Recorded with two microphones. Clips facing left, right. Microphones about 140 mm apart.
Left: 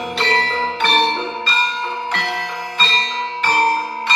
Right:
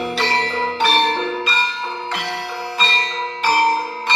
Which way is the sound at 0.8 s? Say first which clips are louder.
Even; centre (ahead or behind).